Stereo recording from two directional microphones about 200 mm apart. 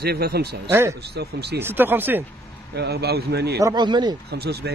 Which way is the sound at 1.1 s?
55° right (ahead or behind).